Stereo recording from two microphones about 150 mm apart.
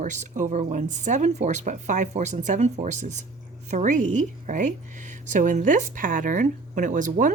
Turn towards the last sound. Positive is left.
turn(degrees=-60)  # may be behind; listen again after turning